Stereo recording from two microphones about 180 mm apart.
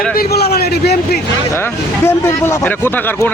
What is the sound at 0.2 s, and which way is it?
A man's voice, 60° left (ahead or behind).